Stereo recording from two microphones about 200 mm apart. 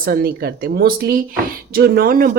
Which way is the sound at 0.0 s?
50° right (ahead or behind).